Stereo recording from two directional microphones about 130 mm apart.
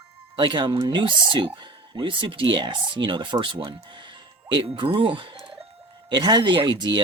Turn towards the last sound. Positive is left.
turn(degrees=-35)  # may be behind; listen again after turning